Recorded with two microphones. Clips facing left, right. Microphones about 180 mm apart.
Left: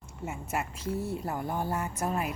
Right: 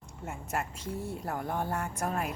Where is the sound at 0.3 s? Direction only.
5° left (ahead or behind).